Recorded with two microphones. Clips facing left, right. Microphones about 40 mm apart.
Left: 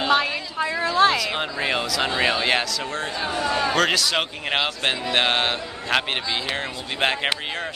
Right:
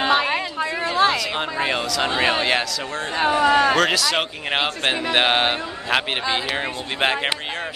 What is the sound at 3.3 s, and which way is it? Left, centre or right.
Speech, right.